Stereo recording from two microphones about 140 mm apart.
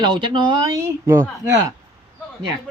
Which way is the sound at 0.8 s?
20° right (ahead or behind).